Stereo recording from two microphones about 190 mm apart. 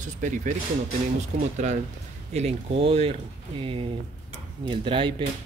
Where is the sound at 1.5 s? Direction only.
40° right (ahead or behind).